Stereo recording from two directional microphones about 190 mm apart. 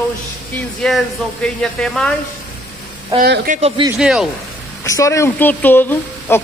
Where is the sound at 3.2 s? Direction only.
50° right (ahead or behind).